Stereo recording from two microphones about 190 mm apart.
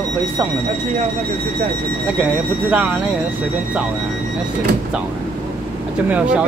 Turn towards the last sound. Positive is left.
turn(degrees=-5)  # may be behind; listen again after turning